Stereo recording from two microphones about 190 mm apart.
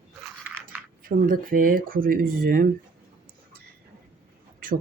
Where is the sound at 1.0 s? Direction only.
45° right (ahead or behind).